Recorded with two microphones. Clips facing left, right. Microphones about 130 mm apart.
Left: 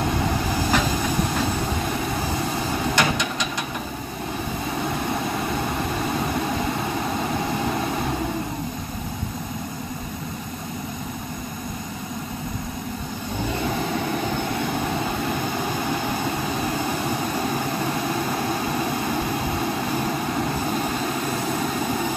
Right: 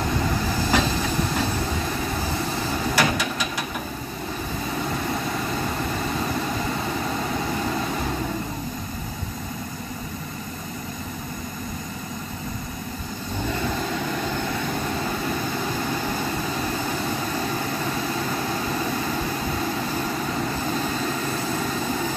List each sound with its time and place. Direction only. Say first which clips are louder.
0.7 s train: right 1 dB; 15° left (ahead or behind)
3.0 s vehicle: right 2 dB; 5° right (ahead or behind)